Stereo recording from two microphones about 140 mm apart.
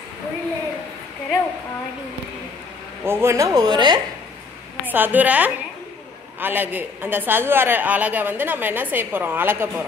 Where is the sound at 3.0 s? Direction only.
20° right (ahead or behind).